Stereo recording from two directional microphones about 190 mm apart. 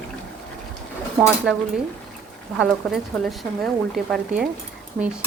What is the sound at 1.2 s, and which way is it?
A woman's voice, 5° right (ahead or behind).